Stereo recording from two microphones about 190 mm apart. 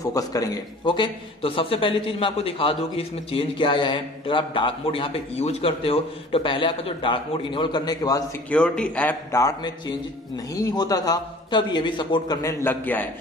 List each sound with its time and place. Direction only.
0.0 s a man's voice: 15° left (ahead or behind)
8.5 s a man's voice: 5° left (ahead or behind)